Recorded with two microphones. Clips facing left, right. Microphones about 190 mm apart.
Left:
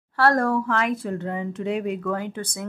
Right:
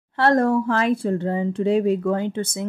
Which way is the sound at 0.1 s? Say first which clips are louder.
Right 3 dB; 20° right (ahead or behind).